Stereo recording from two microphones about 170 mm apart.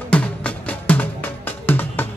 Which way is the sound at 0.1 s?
10° left (ahead or behind).